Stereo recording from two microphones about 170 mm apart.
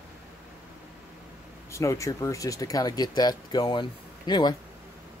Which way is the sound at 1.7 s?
15° left (ahead or behind).